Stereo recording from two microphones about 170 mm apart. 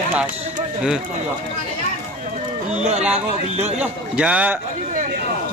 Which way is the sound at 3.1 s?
40° right (ahead or behind).